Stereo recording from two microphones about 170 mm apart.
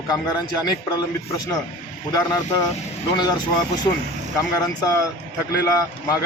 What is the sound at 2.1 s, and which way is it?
Speech, 20° left (ahead or behind).